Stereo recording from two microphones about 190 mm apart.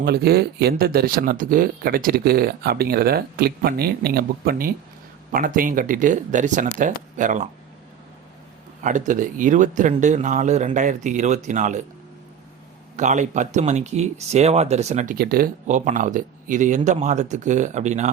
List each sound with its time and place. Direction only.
0.0 s speech: 55° right (ahead or behind)
8.8 s speech: 40° right (ahead or behind)
13.0 s speech: 40° right (ahead or behind)